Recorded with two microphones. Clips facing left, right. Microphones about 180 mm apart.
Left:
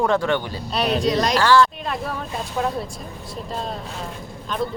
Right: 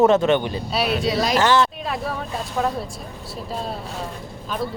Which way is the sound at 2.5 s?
Centre (ahead or behind).